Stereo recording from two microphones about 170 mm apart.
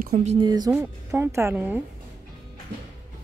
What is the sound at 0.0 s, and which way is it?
Speech, 40° right (ahead or behind).